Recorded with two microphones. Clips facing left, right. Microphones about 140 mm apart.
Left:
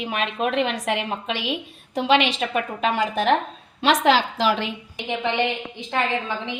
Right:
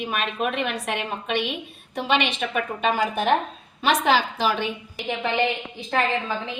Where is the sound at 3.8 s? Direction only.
90° left.